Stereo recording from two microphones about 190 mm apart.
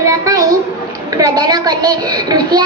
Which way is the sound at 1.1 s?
20° right (ahead or behind).